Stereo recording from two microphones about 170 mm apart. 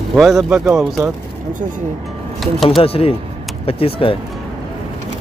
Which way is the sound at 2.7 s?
35° left (ahead or behind).